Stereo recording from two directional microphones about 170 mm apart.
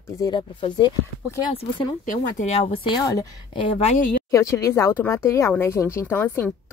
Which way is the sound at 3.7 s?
35° left (ahead or behind).